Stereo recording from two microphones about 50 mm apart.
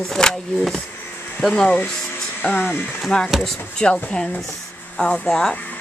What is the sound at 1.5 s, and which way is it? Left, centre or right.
Speech, left.